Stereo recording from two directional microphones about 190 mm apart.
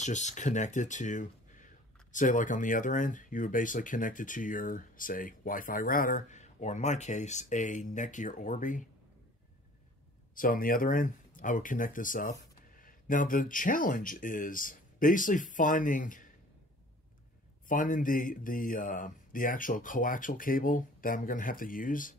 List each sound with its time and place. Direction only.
0.0 s speech: 40° left (ahead or behind)
10.3 s speech: 45° left (ahead or behind)
17.6 s speech: 45° left (ahead or behind)